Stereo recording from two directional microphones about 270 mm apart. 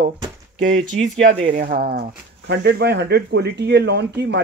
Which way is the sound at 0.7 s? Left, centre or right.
Right.